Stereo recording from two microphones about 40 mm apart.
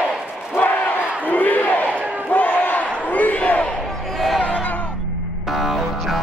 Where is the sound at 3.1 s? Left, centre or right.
Left.